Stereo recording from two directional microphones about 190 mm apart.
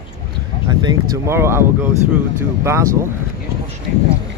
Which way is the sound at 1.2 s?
15° right (ahead or behind).